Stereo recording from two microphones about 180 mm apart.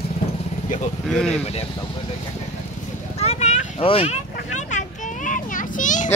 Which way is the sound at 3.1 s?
35° left (ahead or behind).